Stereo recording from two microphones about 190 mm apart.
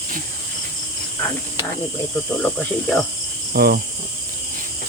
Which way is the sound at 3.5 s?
55° right (ahead or behind).